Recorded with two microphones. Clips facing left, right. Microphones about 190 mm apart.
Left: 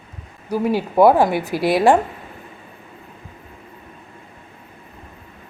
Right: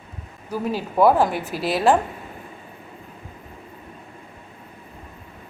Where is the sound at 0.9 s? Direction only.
10° left (ahead or behind).